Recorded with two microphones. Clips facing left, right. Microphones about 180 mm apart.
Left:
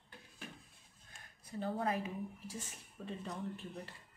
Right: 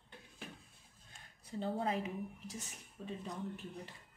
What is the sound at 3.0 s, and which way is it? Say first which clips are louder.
Speech: even; 15° right (ahead or behind).